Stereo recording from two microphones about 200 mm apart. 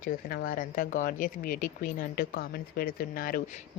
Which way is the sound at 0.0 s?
45° left (ahead or behind).